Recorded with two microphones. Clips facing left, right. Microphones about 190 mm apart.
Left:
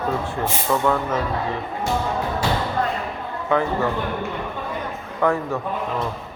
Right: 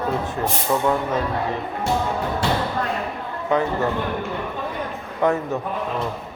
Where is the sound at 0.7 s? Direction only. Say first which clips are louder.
Even; 25° right (ahead or behind).